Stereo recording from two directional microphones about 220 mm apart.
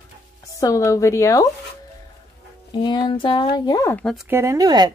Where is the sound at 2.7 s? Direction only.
20° left (ahead or behind).